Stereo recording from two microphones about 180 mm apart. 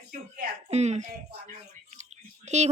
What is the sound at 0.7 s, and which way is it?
Speech, 40° right (ahead or behind).